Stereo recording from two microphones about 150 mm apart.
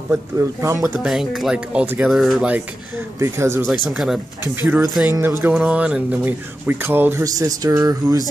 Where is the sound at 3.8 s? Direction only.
Centre (ahead or behind).